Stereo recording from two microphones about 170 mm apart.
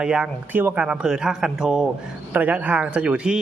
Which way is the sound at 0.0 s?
5° right (ahead or behind).